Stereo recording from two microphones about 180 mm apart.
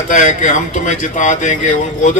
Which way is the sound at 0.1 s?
45° left (ahead or behind).